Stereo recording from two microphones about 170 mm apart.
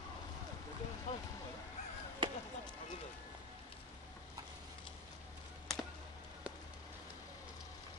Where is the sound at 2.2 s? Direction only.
30° right (ahead or behind).